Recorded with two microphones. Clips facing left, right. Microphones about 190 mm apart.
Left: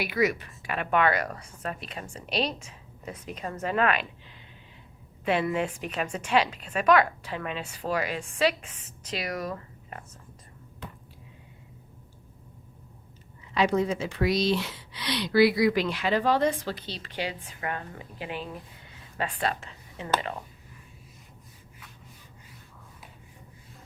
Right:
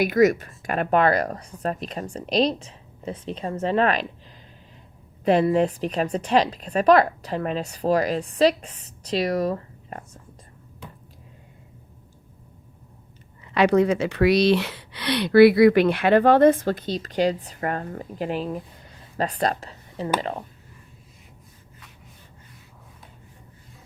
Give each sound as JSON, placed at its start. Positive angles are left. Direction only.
{"t": 0.0, "sound": "a woman's voice", "side_deg": -45}
{"t": 5.2, "sound": "a woman's voice", "side_deg": -35}
{"t": 13.4, "sound": "speech", "side_deg": -65}